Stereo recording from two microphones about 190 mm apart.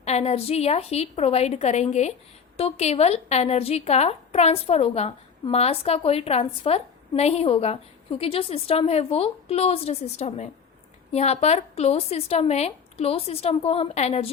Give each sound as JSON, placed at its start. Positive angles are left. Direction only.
{"t": 0.0, "sound": "a woman's voice", "side_deg": 35}